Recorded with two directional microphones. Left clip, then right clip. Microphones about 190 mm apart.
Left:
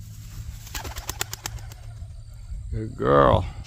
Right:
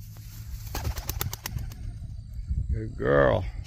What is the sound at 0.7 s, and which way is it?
Bird, 15° left (ahead or behind).